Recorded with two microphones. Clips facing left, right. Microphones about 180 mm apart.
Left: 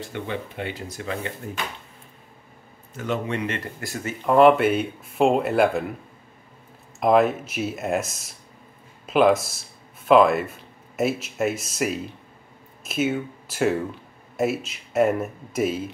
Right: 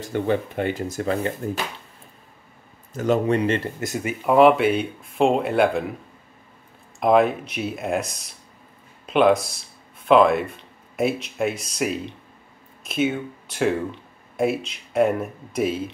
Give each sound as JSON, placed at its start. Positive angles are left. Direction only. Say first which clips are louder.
{"t": 0.1, "sound": "speech", "louder": "right 11 dB", "side_deg": -45}
{"t": 3.0, "sound": "speech", "louder": "right 7 dB", "side_deg": -40}
{"t": 4.2, "sound": "speech", "louder": "even", "side_deg": -5}
{"t": 7.0, "sound": "speech", "louder": "right 1 dB", "side_deg": 0}